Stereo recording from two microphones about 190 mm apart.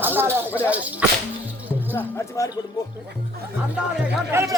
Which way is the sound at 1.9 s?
10° left (ahead or behind).